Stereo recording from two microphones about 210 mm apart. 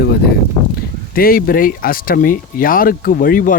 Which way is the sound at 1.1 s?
45° left (ahead or behind).